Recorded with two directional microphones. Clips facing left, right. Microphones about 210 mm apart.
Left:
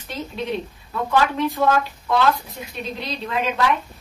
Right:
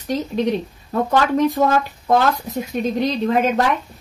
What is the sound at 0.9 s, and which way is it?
A woman's voice, 45° right (ahead or behind).